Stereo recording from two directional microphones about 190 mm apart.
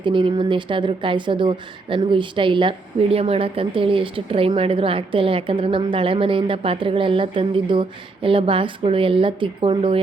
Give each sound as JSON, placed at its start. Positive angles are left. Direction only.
{"t": 0.0, "sound": "speech", "side_deg": -25}